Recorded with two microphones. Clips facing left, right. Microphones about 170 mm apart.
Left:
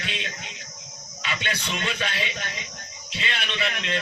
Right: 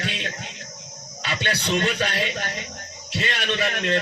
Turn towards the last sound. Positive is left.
turn(degrees=-50)  # may be behind; listen again after turning